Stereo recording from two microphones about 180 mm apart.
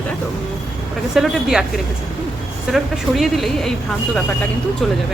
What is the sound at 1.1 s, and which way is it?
Speech, 5° right (ahead or behind).